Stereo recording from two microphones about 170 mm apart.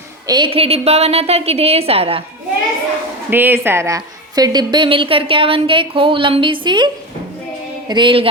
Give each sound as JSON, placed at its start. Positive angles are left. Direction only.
{"t": 0.3, "sound": "a woman's voice", "side_deg": -25}
{"t": 3.2, "sound": "a woman's voice", "side_deg": -10}